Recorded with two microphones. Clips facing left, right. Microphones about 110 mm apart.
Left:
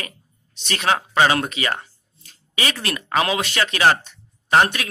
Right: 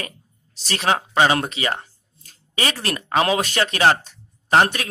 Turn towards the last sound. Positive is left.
turn(degrees=-35)  # may be behind; listen again after turning